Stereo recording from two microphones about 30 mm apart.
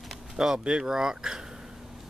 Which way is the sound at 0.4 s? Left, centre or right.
Right.